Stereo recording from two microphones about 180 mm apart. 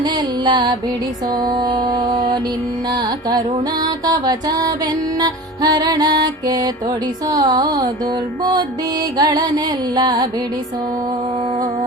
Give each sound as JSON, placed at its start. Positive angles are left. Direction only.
{"t": 0.0, "sound": "music", "side_deg": -25}
{"t": 9.1, "sound": "music", "side_deg": -20}